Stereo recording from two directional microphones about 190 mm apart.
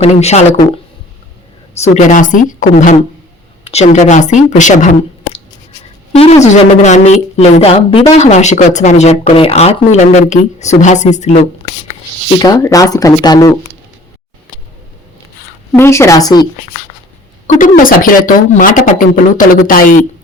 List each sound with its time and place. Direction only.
0.0 s speech: 35° left (ahead or behind)
1.8 s speech: 40° left (ahead or behind)
6.1 s speech: 30° left (ahead or behind)
12.4 s speech: 20° left (ahead or behind)
15.7 s speech: 15° left (ahead or behind)
17.4 s speech: 40° left (ahead or behind)